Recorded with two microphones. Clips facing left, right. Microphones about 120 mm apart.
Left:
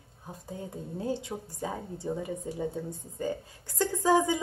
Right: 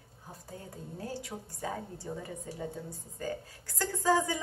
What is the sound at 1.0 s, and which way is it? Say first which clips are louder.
A woman's voice: left 7 dB; 20° left (ahead or behind).